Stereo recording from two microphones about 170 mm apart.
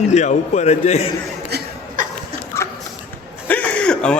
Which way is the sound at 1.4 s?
70° right (ahead or behind).